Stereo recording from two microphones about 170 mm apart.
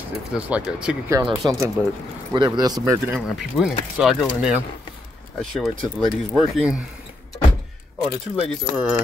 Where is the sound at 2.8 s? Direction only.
5° right (ahead or behind).